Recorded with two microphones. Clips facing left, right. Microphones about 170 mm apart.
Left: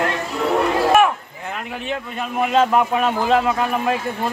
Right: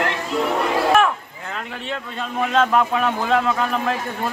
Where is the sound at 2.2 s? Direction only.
15° left (ahead or behind).